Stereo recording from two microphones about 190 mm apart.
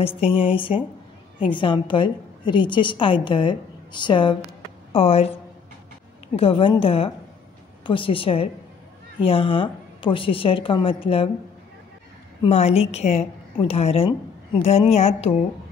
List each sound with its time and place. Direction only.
0.3 s a woman's voice: 25° left (ahead or behind)
6.3 s a woman's voice: 30° left (ahead or behind)
12.4 s a woman's voice: 35° left (ahead or behind)